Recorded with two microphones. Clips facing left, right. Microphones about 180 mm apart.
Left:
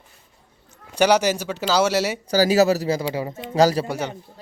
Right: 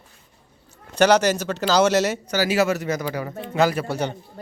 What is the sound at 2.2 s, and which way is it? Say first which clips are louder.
Speech: left 4 dB; 35° left (ahead or behind).